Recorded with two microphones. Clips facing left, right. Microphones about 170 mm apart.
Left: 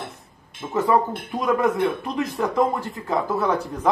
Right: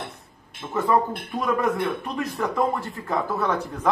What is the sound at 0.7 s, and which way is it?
Speech, 20° left (ahead or behind).